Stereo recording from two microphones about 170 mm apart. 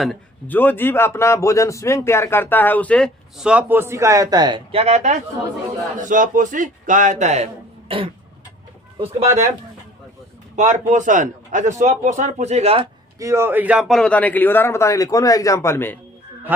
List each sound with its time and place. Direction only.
0.0 s a man's voice: 5° left (ahead or behind); by 5.1 s 40° right (ahead or behind)
6.0 s a man's voice: 50° right (ahead or behind); by 9.2 s 35° right (ahead or behind)
10.5 s a man's voice: 45° right (ahead or behind)
13.1 s a man's voice: 15° right (ahead or behind); by 16.0 s 15° left (ahead or behind)